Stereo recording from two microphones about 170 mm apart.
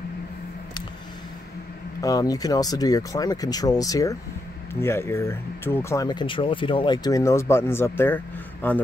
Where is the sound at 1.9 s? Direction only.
20° left (ahead or behind).